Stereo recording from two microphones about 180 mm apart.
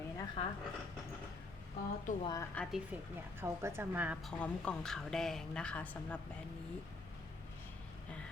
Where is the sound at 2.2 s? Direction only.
20° left (ahead or behind).